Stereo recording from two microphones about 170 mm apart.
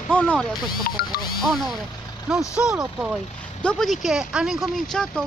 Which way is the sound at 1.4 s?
Centre (ahead or behind).